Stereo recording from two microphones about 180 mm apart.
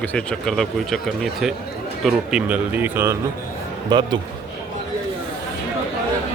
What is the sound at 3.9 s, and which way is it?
Speech, 25° right (ahead or behind).